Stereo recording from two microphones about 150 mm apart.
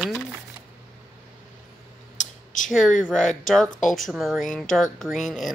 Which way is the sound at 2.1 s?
60° left (ahead or behind).